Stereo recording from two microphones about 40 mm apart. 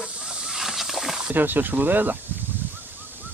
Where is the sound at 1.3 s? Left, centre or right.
Right.